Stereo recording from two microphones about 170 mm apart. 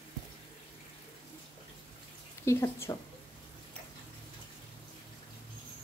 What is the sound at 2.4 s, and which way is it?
Speech, 15° left (ahead or behind).